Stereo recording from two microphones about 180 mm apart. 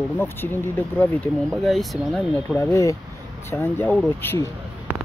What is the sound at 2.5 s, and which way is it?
Speech, 15° left (ahead or behind).